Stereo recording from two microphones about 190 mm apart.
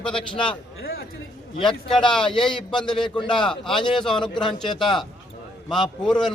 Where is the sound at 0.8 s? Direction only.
55° left (ahead or behind).